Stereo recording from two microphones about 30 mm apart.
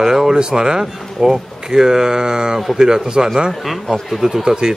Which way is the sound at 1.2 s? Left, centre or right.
Centre.